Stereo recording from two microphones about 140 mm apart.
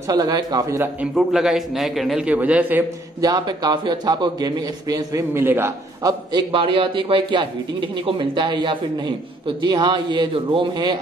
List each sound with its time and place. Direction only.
0.1 s a man's voice: 30° right (ahead or behind)
1.1 s a man's voice: 5° right (ahead or behind)
3.2 s a man's voice: 25° right (ahead or behind)
6.3 s speech: 35° right (ahead or behind)